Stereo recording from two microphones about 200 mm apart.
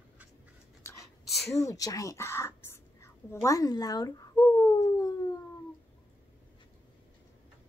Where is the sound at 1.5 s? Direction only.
15° left (ahead or behind).